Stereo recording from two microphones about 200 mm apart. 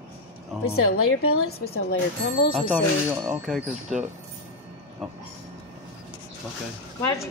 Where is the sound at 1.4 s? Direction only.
50° left (ahead or behind).